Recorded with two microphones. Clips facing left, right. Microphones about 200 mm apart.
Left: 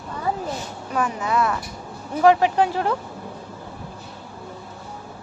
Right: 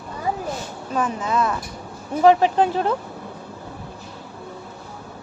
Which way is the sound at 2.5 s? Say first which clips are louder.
Right 1 dB; 20° right (ahead or behind).